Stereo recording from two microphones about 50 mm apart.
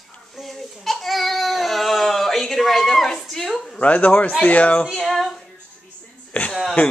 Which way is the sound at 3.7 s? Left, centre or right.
Left.